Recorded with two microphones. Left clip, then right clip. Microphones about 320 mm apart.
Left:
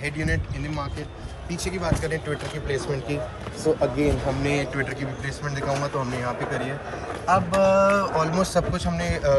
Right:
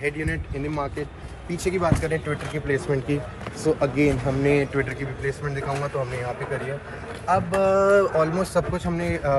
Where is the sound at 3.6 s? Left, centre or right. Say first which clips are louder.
Right 1 dB; right.